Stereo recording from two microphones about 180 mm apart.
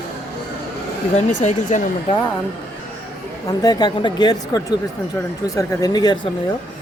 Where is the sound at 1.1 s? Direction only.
40° left (ahead or behind).